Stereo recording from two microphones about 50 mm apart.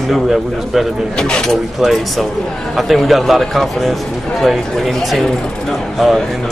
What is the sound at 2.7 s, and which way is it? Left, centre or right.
A man's voice, centre.